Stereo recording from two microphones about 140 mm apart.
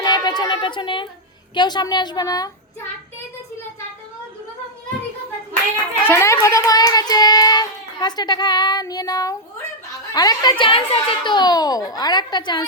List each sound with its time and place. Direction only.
0.0 s a woman's voice: 30° left (ahead or behind)
6.1 s child singing: 20° left (ahead or behind)
10.2 s a child's voice: 30° left (ahead or behind)